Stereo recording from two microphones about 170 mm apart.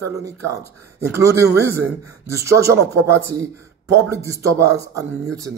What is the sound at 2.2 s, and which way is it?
Speech, 15° right (ahead or behind).